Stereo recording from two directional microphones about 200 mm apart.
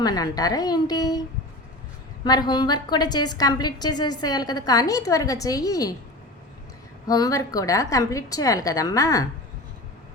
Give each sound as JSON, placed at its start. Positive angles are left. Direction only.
{"t": 0.0, "sound": "a woman's voice", "side_deg": 20}
{"t": 2.2, "sound": "a woman's voice", "side_deg": 20}
{"t": 7.1, "sound": "a woman's voice", "side_deg": 20}